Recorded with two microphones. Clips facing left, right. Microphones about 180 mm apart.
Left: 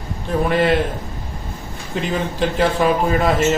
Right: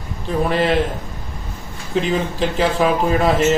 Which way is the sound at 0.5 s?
Centre (ahead or behind).